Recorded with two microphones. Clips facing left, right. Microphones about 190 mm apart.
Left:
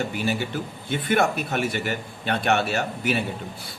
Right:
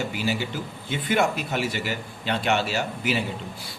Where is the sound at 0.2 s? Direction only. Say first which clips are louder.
Left 1 dB; 55° left (ahead or behind).